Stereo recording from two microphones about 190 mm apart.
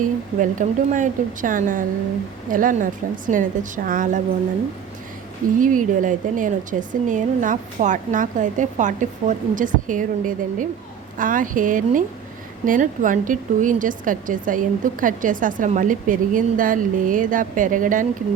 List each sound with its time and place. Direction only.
0.0 s speech: 40° right (ahead or behind)
5.5 s speech: 45° right (ahead or behind)